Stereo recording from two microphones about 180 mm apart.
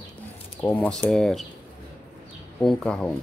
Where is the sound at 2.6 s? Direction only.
5° left (ahead or behind).